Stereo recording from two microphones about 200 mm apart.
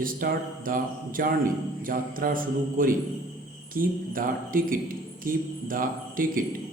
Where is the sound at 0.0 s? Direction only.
45° right (ahead or behind).